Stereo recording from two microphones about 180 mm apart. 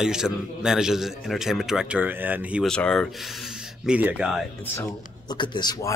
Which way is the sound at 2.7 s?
5° left (ahead or behind).